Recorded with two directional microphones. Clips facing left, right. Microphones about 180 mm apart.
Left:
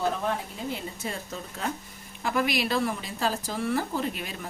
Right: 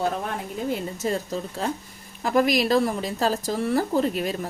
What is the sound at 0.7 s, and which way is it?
Speech, 40° right (ahead or behind).